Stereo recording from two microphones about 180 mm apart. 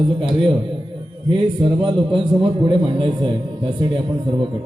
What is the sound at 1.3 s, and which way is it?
A man's voice, 30° right (ahead or behind).